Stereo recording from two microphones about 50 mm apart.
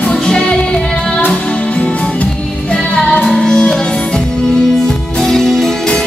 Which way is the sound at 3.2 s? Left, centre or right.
Centre.